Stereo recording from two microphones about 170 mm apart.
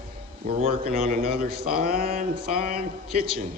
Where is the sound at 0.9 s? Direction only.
60° right (ahead or behind).